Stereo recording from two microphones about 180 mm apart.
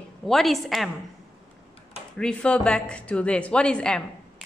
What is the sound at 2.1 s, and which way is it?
Speech, 5° left (ahead or behind).